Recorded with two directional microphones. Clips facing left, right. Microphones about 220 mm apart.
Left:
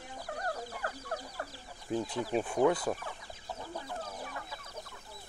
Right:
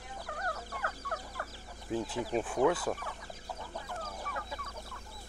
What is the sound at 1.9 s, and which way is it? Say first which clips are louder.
Speech: left 1 dB; centre (ahead or behind).